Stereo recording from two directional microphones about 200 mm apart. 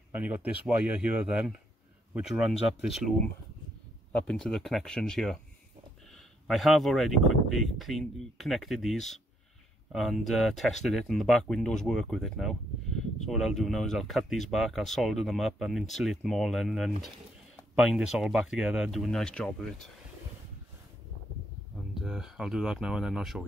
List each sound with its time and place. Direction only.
0.1 s speech: 10° right (ahead or behind)
6.4 s speech: centre (ahead or behind)
21.9 s speech: 5° right (ahead or behind)